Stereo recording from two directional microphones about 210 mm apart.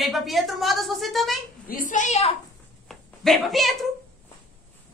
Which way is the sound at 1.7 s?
40° left (ahead or behind).